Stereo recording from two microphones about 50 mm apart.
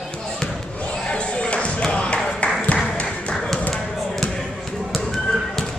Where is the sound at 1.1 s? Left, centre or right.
Centre.